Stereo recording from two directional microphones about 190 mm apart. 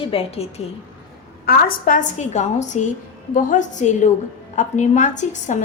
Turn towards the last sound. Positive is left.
turn(degrees=40)  # may be behind; listen again after turning